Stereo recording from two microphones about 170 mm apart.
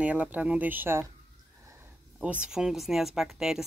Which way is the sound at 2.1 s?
5° right (ahead or behind).